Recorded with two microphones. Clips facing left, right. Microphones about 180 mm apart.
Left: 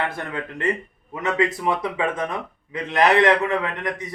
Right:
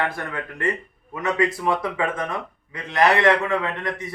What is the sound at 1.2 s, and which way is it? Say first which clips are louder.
A man's voice: even; 20° left (ahead or behind).